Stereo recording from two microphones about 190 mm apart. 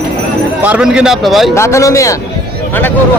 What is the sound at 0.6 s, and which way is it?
Speech, 5° right (ahead or behind).